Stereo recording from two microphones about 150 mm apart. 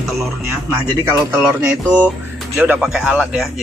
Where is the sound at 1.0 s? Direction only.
15° right (ahead or behind).